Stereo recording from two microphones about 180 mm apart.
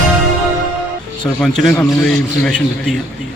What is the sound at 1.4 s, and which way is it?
A man's voice, 5° left (ahead or behind).